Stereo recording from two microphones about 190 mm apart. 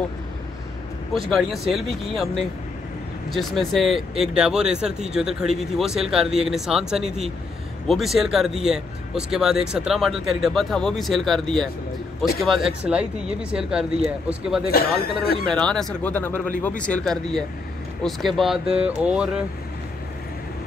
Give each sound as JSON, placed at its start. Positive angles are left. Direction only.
{"t": 1.1, "sound": "speech", "side_deg": 0}
{"t": 14.7, "sound": "a man's voice", "side_deg": 55}
{"t": 15.4, "sound": "speech", "side_deg": 5}
{"t": 18.7, "sound": "a sound", "side_deg": -30}
{"t": 19.0, "sound": "speech", "side_deg": -5}